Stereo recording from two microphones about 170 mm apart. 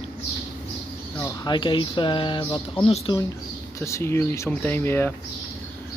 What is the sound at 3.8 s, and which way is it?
Speech, 15° left (ahead or behind).